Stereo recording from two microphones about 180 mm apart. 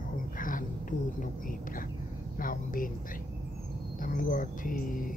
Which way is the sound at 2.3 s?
50° left (ahead or behind).